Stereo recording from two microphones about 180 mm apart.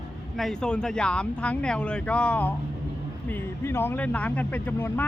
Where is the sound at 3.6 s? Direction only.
15° left (ahead or behind).